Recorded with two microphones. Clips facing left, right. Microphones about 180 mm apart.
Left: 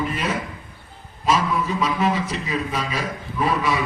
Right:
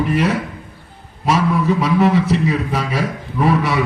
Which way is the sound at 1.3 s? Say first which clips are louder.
Right 5 dB; 70° right (ahead or behind).